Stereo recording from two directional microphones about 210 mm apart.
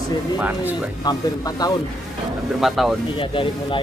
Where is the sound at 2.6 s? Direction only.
Centre (ahead or behind).